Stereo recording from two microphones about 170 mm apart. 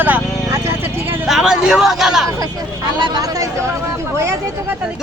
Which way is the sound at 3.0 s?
25° right (ahead or behind).